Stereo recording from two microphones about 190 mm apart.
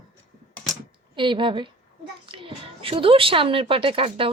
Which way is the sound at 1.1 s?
25° right (ahead or behind).